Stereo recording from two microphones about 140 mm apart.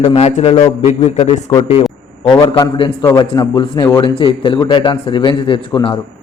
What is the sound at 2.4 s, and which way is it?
Speech, 25° left (ahead or behind).